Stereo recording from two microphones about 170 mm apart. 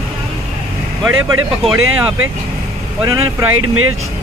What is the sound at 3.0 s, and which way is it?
Speech, 20° right (ahead or behind).